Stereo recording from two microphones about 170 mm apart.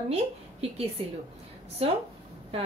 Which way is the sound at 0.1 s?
35° right (ahead or behind).